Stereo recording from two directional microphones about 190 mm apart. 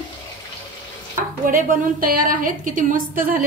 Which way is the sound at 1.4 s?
45° right (ahead or behind).